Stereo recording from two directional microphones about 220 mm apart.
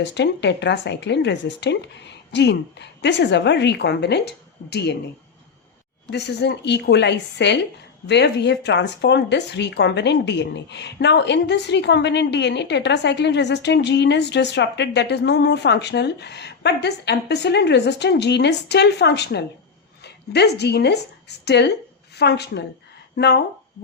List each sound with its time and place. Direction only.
0.0 s speech: 50° left (ahead or behind)
6.1 s a woman's voice: 50° left (ahead or behind)